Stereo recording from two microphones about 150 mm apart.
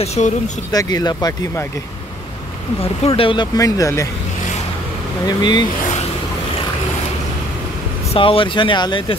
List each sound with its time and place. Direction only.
0.0 s speech: 45° left (ahead or behind)
0.7 s speech: 25° left (ahead or behind)
2.8 s speech: 40° left (ahead or behind)
3.5 s speech: 25° left (ahead or behind)
5.2 s speech: 30° left (ahead or behind)
8.1 s speech: 35° left (ahead or behind)